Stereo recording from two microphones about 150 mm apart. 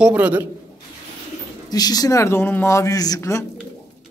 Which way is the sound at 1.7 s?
25° left (ahead or behind).